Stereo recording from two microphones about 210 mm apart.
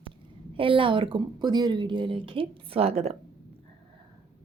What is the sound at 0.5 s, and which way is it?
A woman's voice, 25° right (ahead or behind).